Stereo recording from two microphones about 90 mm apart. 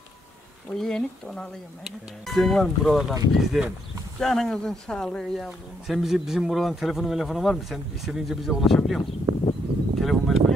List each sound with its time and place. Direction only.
0.7 s a man's voice: 10° left (ahead or behind)
9.3 s a sound: 40° right (ahead or behind)
9.9 s speech: centre (ahead or behind)